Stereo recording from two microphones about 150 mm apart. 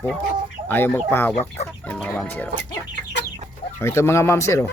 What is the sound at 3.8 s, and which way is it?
Speech, 15° left (ahead or behind).